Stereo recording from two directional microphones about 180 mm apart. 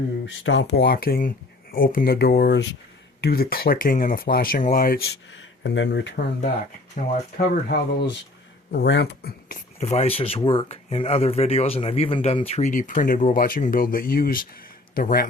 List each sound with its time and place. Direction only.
0.3 s speech: 90° left; by 5.0 s 55° left (ahead or behind)
5.3 s speech: 90° left
7.0 s speech: 40° left (ahead or behind)
7.3 s speech: 65° left (ahead or behind)
8.7 s speech: 75° left (ahead or behind)
9.8 s speech: 35° left (ahead or behind); by 15.3 s 55° left (ahead or behind)